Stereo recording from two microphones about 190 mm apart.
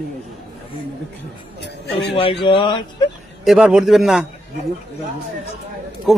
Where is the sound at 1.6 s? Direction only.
65° left (ahead or behind).